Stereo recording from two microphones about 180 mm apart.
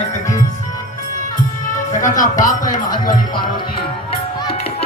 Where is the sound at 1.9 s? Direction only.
45° left (ahead or behind).